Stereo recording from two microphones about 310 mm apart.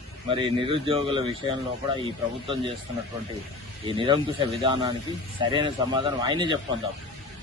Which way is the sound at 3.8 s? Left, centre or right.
Centre.